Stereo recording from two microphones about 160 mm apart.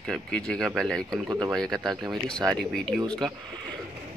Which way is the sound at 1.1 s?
20° right (ahead or behind).